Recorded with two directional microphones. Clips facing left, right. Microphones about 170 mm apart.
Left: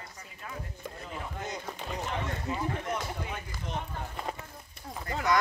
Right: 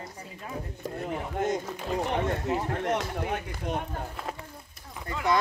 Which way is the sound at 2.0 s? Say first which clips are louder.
Right 6 dB; 65° right (ahead or behind).